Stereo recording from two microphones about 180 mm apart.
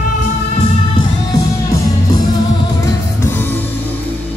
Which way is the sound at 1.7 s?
20° left (ahead or behind).